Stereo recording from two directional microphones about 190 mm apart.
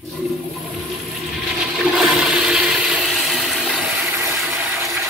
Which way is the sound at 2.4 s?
5° right (ahead or behind).